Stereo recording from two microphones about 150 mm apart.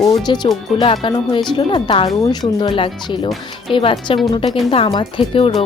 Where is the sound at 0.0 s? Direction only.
25° left (ahead or behind).